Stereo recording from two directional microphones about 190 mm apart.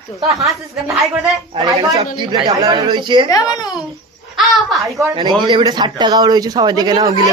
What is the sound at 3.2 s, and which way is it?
Speech, 20° left (ahead or behind).